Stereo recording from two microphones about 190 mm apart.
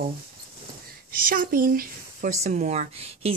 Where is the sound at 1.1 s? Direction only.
50° right (ahead or behind).